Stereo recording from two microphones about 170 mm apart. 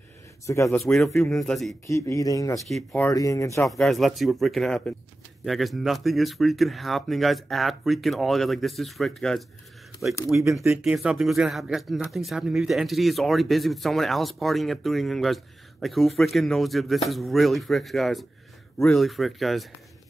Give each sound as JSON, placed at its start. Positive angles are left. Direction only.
{"t": 0.5, "sound": "speech", "side_deg": 15}
{"t": 0.9, "sound": "speech", "side_deg": 0}
{"t": 1.9, "sound": "speech", "side_deg": 20}
{"t": 2.7, "sound": "speech", "side_deg": 5}
{"t": 3.1, "sound": "speech", "side_deg": 20}
{"t": 3.7, "sound": "speech", "side_deg": 0}
{"t": 10.3, "sound": "speech", "side_deg": -10}